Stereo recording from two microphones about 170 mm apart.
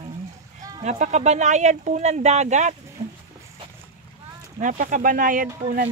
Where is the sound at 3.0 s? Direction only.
35° right (ahead or behind).